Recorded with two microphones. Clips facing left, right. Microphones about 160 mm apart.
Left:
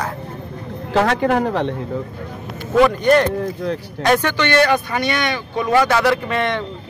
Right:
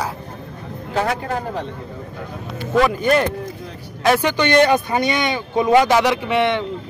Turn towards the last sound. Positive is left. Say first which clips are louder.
# right 1 dB
turn(degrees=-15)  # may be behind; listen again after turning